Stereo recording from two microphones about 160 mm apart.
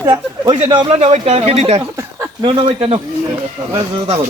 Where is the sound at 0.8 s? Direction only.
40° right (ahead or behind).